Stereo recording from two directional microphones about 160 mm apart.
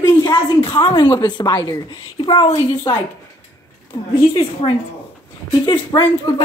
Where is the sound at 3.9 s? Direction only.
25° left (ahead or behind).